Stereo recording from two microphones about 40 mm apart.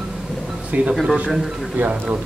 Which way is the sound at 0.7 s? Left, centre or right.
Right.